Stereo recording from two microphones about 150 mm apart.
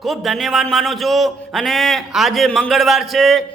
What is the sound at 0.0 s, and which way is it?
A man's voice, centre (ahead or behind).